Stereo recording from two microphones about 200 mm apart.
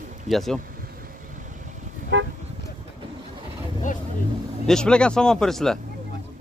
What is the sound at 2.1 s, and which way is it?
Toot, 65° right (ahead or behind).